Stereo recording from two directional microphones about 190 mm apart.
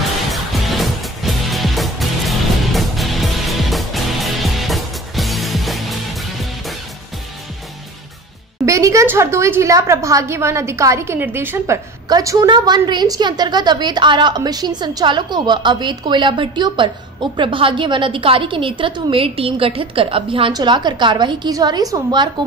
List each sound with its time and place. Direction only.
0.3 s music: centre (ahead or behind)
8.6 s a woman's voice: 15° right (ahead or behind)